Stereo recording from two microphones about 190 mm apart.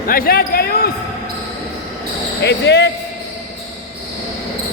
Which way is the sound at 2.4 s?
65° left (ahead or behind).